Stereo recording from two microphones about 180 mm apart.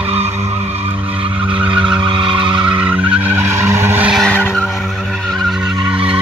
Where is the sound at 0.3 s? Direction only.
15° right (ahead or behind).